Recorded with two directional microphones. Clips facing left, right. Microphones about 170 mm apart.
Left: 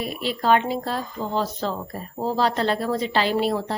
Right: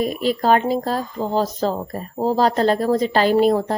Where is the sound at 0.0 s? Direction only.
45° right (ahead or behind).